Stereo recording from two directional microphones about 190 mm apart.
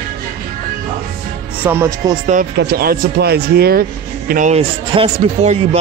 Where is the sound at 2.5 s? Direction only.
60° right (ahead or behind).